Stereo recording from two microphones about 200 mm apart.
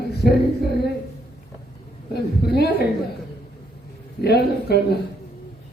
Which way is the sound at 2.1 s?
50° left (ahead or behind).